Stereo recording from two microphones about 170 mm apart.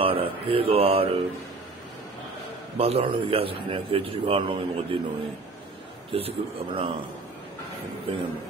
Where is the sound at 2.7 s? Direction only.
35° right (ahead or behind).